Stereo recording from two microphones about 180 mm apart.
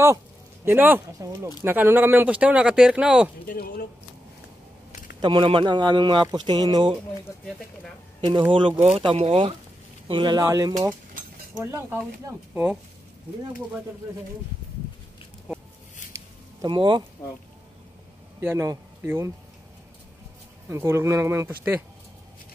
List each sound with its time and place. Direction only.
0.7 s speech: 10° right (ahead or behind)
3.4 s speech: 55° left (ahead or behind)
5.2 s speech: 30° right (ahead or behind)
8.3 s speech: 30° right (ahead or behind); by 12.7 s 10° right (ahead or behind)
16.6 s speech: 25° right (ahead or behind)
17.2 s speech: 20° left (ahead or behind)
18.4 s speech: 15° right (ahead or behind)
20.6 s speech: 15° right (ahead or behind)